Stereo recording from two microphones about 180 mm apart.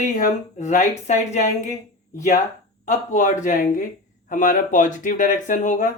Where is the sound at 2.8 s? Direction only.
45° left (ahead or behind).